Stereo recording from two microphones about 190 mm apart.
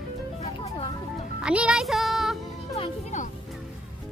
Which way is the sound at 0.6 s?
30° left (ahead or behind).